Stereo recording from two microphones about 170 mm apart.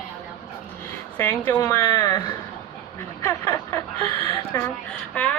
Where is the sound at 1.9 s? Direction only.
20° left (ahead or behind).